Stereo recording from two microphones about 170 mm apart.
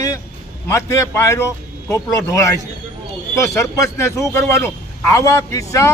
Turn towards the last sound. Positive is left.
turn(degrees=20)  # may be behind; listen again after turning